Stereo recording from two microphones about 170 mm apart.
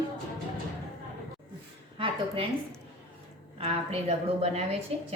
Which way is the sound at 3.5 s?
35° right (ahead or behind).